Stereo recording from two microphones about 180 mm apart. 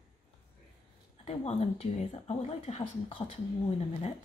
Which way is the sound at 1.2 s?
35° left (ahead or behind).